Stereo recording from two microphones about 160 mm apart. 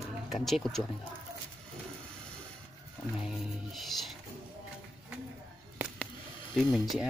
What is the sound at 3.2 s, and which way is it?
Music, centre (ahead or behind).